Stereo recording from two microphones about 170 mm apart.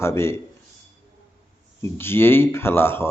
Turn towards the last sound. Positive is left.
turn(degrees=15)  # may be behind; listen again after turning